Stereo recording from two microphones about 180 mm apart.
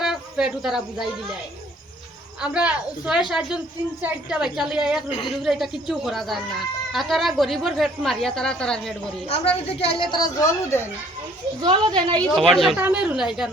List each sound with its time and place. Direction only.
0.0 s speech: 5° right (ahead or behind)
2.4 s a woman's voice: 5° right (ahead or behind)
9.2 s a woman's voice: 30° left (ahead or behind); by 10.8 s 15° left (ahead or behind)
11.6 s a woman's voice: 25° right (ahead or behind)
12.3 s a woman's voice: centre (ahead or behind)